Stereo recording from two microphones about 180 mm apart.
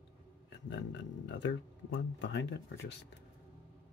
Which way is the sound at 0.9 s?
90° left.